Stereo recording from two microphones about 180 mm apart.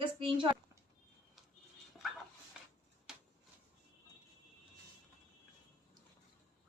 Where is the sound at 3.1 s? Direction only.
5° right (ahead or behind).